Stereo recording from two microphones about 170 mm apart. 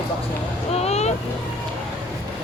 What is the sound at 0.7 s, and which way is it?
Vehicle, 40° left (ahead or behind).